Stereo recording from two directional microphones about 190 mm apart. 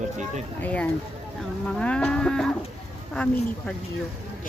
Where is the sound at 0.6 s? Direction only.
5° left (ahead or behind).